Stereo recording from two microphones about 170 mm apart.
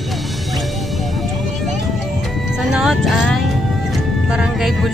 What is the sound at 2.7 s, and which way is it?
Speech, centre (ahead or behind).